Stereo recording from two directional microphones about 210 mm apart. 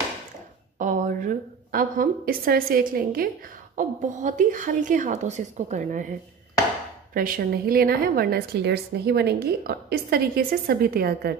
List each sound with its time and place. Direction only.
0.7 s a woman's voice: 40° right (ahead or behind)
7.2 s a woman's voice: 40° right (ahead or behind)